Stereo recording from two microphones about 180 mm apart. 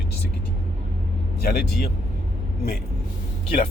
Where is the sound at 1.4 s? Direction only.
60° left (ahead or behind).